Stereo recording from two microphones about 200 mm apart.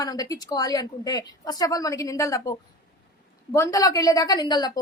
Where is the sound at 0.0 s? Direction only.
20° left (ahead or behind).